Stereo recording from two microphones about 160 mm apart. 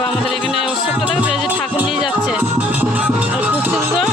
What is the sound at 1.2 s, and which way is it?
Music, 5° right (ahead or behind).